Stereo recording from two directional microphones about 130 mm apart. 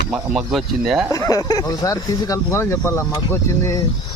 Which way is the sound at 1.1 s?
25° left (ahead or behind).